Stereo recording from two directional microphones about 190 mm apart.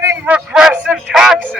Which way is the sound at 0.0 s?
10° right (ahead or behind).